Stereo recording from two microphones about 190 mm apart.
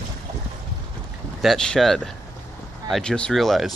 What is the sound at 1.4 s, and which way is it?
Speech, 5° left (ahead or behind).